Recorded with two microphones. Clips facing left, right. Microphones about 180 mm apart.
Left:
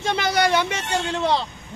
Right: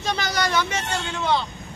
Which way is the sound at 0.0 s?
25° left (ahead or behind).